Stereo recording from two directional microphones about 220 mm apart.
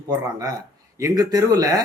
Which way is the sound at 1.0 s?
15° right (ahead or behind).